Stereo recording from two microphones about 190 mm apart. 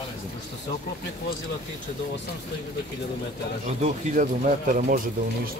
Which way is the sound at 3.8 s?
40° right (ahead or behind).